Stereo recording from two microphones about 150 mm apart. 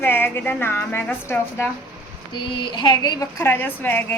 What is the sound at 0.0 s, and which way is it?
A woman's voice, 15° left (ahead or behind).